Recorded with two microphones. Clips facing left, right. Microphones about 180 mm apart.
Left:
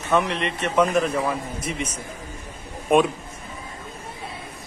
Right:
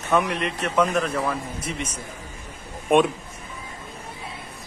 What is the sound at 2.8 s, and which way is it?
Speech, centre (ahead or behind).